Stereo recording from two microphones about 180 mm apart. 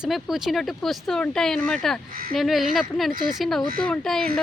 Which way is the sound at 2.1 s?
55° right (ahead or behind).